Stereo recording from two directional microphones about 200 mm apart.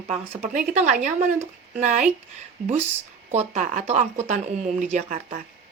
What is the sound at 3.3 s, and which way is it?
Speech, 35° right (ahead or behind).